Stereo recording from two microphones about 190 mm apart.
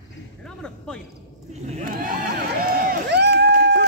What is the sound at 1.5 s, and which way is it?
Crowd, 35° right (ahead or behind).